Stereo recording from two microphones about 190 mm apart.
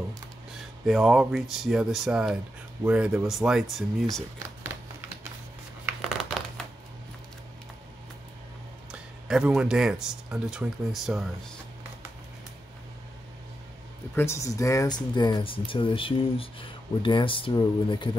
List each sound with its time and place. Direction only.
0.8 s speech: centre (ahead or behind)
5.9 s tearing: centre (ahead or behind)
8.9 s speech: 5° right (ahead or behind)
14.1 s speech: 15° left (ahead or behind)